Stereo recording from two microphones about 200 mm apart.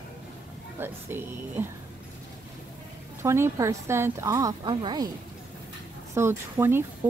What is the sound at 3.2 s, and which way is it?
A woman's voice, 15° right (ahead or behind).